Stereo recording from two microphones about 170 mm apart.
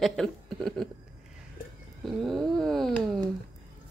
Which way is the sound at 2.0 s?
Centre (ahead or behind).